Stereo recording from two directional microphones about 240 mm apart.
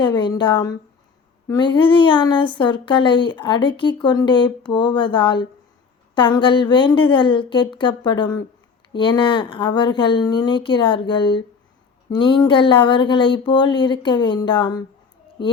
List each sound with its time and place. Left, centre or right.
0.0 s speech: centre